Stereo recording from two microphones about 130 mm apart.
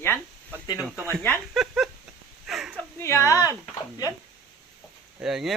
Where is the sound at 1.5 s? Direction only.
Centre (ahead or behind).